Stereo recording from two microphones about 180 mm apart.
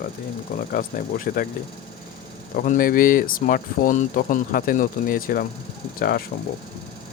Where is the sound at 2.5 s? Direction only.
50° left (ahead or behind).